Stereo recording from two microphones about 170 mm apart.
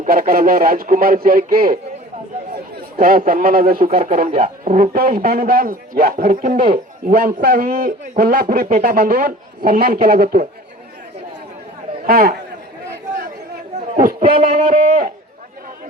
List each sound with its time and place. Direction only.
0.0 s a man's voice: 60° right (ahead or behind)
3.0 s a man's voice: 60° right (ahead or behind)
12.0 s a man's voice: 60° right (ahead or behind)
13.9 s speech: 55° right (ahead or behind)
14.3 s a sound: 40° right (ahead or behind)